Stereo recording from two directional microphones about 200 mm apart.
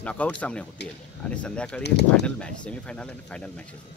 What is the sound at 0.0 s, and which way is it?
Speech, 5° left (ahead or behind).